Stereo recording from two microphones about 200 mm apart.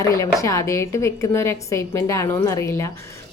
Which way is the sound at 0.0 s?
15° left (ahead or behind).